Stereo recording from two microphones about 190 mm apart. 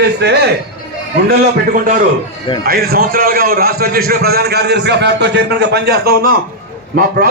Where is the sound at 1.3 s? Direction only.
45° right (ahead or behind).